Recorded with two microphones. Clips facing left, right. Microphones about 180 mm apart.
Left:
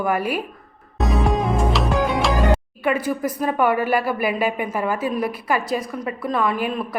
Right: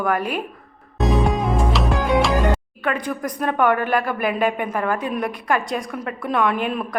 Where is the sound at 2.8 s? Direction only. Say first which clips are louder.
Left 3 dB; 5° left (ahead or behind).